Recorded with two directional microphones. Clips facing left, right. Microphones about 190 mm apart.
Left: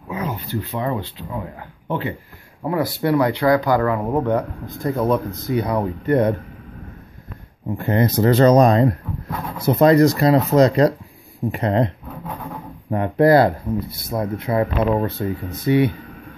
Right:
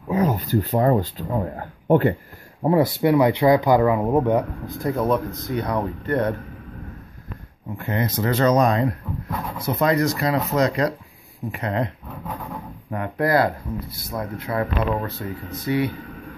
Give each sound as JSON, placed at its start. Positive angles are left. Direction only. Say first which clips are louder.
{"t": 0.1, "sound": "speech", "louder": "right 5 dB", "side_deg": -40}
{"t": 2.6, "sound": "speech", "louder": "right 3 dB", "side_deg": -25}
{"t": 4.8, "sound": "speech", "louder": "left 2 dB", "side_deg": 0}
{"t": 7.7, "sound": "speech", "louder": "left 6 dB", "side_deg": 35}
{"t": 12.9, "sound": "speech", "louder": "left 6 dB", "side_deg": 30}